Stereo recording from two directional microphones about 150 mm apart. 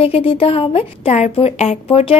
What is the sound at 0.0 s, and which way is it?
A woman's voice, 40° left (ahead or behind).